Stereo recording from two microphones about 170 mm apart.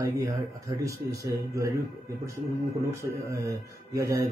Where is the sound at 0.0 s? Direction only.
20° right (ahead or behind).